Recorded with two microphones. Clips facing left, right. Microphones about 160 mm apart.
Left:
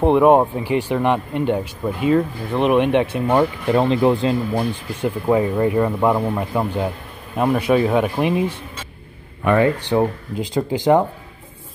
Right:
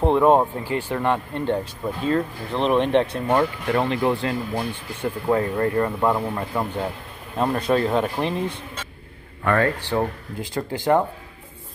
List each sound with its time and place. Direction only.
0.0 s speech: 15° left (ahead or behind)
3.8 s speech: 25° left (ahead or behind)